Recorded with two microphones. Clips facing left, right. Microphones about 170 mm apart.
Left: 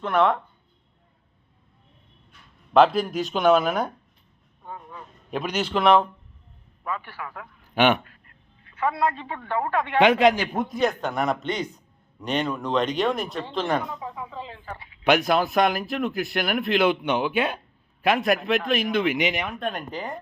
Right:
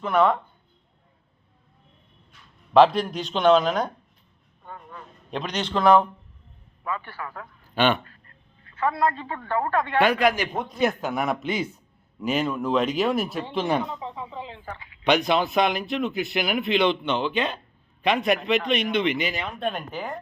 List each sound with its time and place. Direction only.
0.0 s speech: centre (ahead or behind)
2.7 s speech: centre (ahead or behind)
4.6 s a sound: 10° left (ahead or behind)
6.8 s a man's voice: 5° left (ahead or behind)
10.0 s a man's voice: 20° left (ahead or behind)
10.5 s speech: centre (ahead or behind)
14.0 s speech: 25° right (ahead or behind)
15.0 s speech: 5° left (ahead or behind)
19.1 s a man's voice: 15° left (ahead or behind)
19.5 s speech: 5° right (ahead or behind)